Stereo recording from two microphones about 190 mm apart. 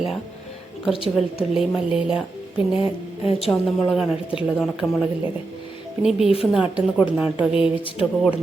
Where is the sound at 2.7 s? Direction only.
30° left (ahead or behind).